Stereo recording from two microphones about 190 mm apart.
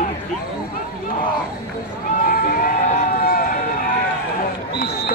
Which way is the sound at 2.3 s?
50° left (ahead or behind).